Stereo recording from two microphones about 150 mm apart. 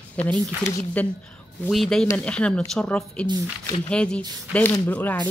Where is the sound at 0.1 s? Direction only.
10° left (ahead or behind).